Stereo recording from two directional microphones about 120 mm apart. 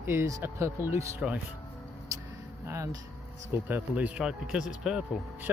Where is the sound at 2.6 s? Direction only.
25° right (ahead or behind); by 5.2 s 5° right (ahead or behind).